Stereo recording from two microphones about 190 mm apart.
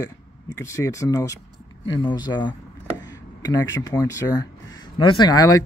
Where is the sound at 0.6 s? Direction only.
15° left (ahead or behind).